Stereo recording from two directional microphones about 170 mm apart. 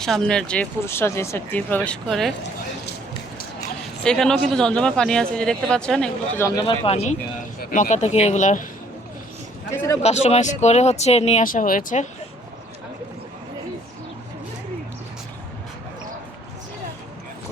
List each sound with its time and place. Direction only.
0.0 s speech: 5° left (ahead or behind)
4.0 s speech: 5° left (ahead or behind)
6.4 s speech: 20° left (ahead or behind)
6.8 s speech: 40° left (ahead or behind)
10.0 s speech: 40° left (ahead or behind)